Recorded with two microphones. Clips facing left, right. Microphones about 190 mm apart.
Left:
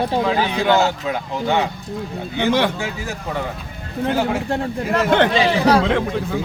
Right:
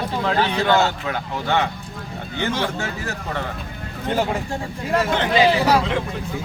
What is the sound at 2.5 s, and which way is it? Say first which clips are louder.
Speech: left 7 dB; 65° left (ahead or behind).